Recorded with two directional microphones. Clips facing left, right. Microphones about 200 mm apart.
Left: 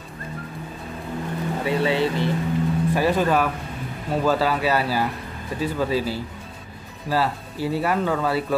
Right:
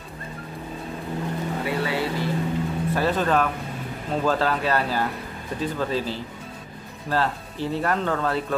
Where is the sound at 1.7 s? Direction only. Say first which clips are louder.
Left 6 dB; 25° left (ahead or behind).